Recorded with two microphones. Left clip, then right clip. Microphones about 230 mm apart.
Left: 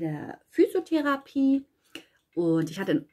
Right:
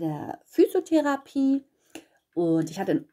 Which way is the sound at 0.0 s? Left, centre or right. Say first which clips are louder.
Right 2 dB; right.